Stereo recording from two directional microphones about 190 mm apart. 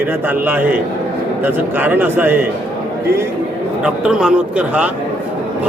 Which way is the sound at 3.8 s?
5° right (ahead or behind).